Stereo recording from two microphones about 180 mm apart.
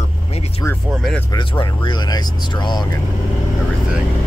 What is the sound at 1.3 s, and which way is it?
Speech, 25° left (ahead or behind).